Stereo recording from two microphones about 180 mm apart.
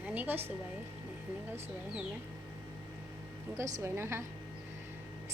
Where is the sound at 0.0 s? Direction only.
10° right (ahead or behind).